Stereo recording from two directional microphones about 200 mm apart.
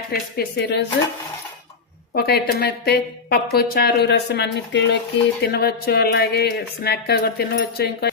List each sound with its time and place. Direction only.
0.1 s speech: 50° left (ahead or behind)
2.1 s a woman's voice: 50° left (ahead or behind)
5.4 s a woman's voice: 55° left (ahead or behind)